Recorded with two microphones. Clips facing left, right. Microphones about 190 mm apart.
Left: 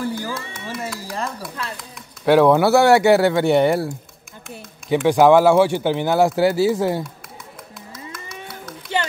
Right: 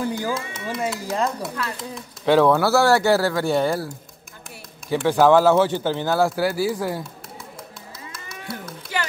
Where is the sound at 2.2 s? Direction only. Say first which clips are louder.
Left 3 dB; 15° left (ahead or behind).